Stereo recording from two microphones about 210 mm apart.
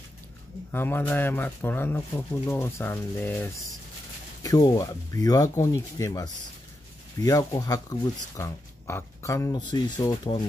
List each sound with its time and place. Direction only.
0.7 s speech: 10° left (ahead or behind)